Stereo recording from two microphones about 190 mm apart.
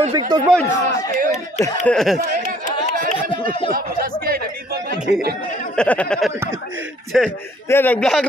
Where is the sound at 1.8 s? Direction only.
Centre (ahead or behind).